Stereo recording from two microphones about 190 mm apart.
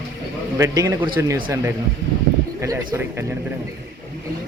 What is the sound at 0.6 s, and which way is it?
A man's voice, 15° right (ahead or behind).